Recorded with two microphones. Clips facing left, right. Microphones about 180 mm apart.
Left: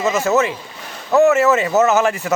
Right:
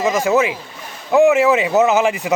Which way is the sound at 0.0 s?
10° right (ahead or behind).